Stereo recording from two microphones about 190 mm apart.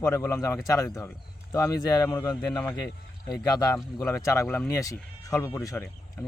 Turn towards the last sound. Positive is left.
turn(degrees=10)  # may be behind; listen again after turning